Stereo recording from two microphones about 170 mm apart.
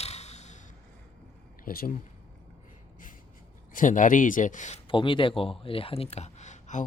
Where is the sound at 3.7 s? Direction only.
50° left (ahead or behind).